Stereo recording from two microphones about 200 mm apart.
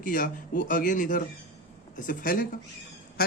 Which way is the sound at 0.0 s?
45° left (ahead or behind).